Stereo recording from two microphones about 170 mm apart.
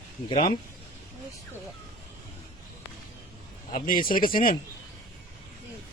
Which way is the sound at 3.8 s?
55° left (ahead or behind).